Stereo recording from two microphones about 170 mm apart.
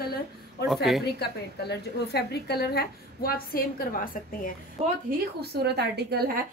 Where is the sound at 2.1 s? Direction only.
75° left (ahead or behind); by 4.5 s 60° left (ahead or behind).